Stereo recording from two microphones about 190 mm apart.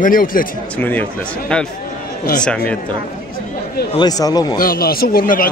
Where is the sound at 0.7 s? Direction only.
10° left (ahead or behind).